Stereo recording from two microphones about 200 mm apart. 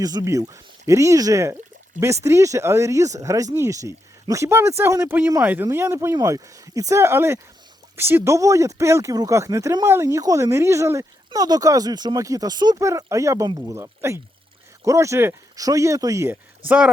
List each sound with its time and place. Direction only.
0.0 s speech: 20° right (ahead or behind)